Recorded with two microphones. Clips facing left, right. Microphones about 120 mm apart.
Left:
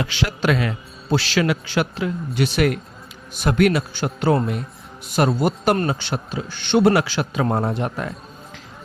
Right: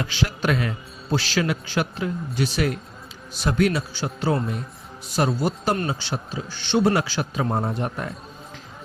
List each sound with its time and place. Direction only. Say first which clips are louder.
0.0 s a man's voice: left 3 dB; 80° left
1.1 s a man's voice: left 4 dB; 75° left (ahead or behind)